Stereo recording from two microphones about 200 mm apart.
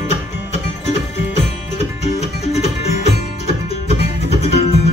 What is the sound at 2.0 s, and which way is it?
Music, 35° left (ahead or behind).